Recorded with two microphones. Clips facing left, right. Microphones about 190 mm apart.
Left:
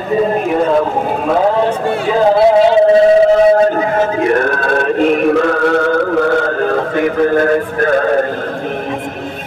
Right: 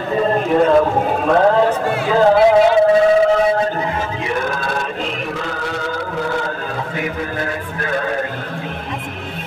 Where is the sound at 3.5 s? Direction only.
50° left (ahead or behind).